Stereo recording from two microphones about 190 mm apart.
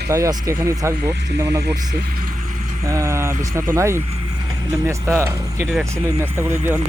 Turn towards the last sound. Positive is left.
turn(degrees=-10)  # may be behind; listen again after turning